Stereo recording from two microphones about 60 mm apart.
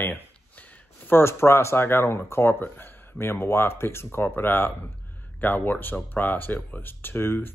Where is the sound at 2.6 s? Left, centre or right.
Left.